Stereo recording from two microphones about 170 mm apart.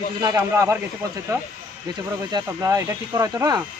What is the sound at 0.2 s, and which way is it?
Speech, 20° right (ahead or behind).